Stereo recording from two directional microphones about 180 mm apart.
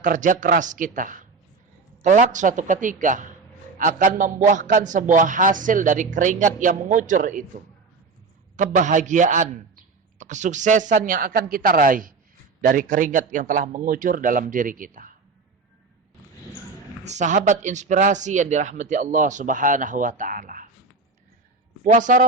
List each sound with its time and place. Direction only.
0.0 s a man's voice: 45° right (ahead or behind)
17.0 s a man's voice: 40° right (ahead or behind)
21.9 s a man's voice: 45° right (ahead or behind)